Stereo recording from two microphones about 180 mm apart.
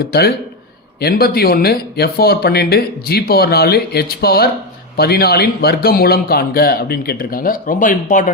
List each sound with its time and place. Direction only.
0.0 s speech: 60° left (ahead or behind)